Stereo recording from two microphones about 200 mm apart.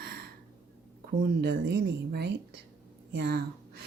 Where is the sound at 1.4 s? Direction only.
55° right (ahead or behind).